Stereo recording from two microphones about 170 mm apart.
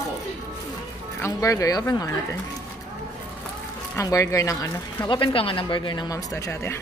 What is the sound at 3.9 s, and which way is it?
A man's voice, 20° left (ahead or behind).